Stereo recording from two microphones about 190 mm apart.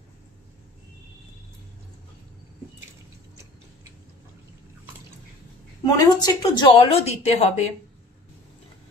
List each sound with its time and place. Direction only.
5.9 s a woman's voice: 20° left (ahead or behind); by 7.7 s 35° left (ahead or behind)